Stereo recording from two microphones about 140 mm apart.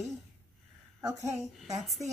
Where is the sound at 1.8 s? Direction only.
Centre (ahead or behind).